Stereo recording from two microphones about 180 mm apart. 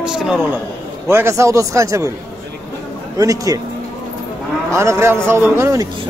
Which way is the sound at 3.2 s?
20° right (ahead or behind).